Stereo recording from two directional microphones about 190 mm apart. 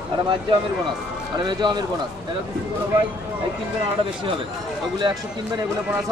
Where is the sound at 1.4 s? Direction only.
25° right (ahead or behind).